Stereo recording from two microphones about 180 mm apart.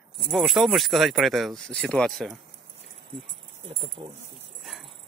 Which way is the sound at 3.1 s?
30° right (ahead or behind).